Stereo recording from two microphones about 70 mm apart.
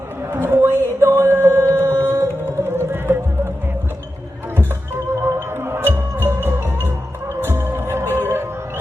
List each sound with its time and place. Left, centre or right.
0.3 s a sound: right
1.1 s music: right
2.6 s music: right
5.2 s music: right